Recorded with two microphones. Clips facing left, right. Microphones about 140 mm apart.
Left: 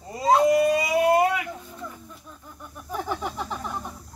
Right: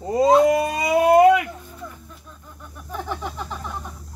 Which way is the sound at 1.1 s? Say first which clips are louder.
Right 10 dB; 90° right.